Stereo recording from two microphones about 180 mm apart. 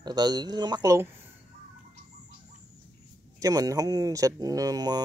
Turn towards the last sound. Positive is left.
turn(degrees=-20)  # may be behind; listen again after turning